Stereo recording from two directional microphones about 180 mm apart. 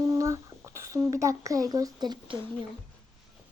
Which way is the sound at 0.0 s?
15° right (ahead or behind).